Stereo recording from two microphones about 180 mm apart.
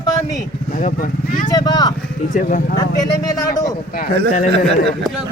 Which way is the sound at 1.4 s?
20° left (ahead or behind).